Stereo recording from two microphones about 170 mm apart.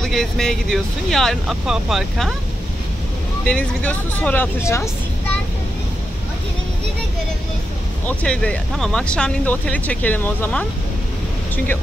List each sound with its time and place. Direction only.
0.0 s speech: 5° left (ahead or behind)
3.4 s speech: 5° left (ahead or behind)
8.2 s speech: 5° left (ahead or behind)